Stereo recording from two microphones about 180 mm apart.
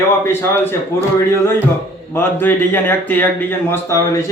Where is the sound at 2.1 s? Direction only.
10° left (ahead or behind).